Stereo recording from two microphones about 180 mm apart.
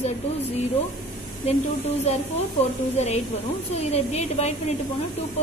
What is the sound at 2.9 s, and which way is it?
A woman's voice, 35° left (ahead or behind).